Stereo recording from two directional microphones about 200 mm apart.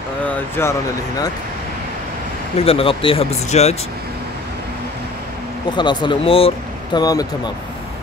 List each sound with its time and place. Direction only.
0.6 s speech: 10° left (ahead or behind)
2.6 s speech: 30° left (ahead or behind)
5.8 s speech: 20° left (ahead or behind)